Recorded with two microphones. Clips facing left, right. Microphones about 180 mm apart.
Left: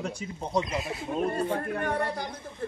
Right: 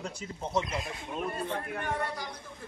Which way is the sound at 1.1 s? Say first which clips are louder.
Left 7 dB; 40° left (ahead or behind).